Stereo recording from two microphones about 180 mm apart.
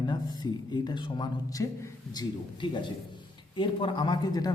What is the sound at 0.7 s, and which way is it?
A man's voice, 25° left (ahead or behind).